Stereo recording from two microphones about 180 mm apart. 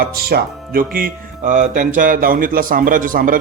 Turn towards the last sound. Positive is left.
turn(degrees=-50)  # may be behind; listen again after turning